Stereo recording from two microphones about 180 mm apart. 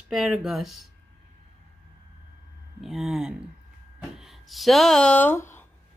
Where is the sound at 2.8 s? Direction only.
Centre (ahead or behind).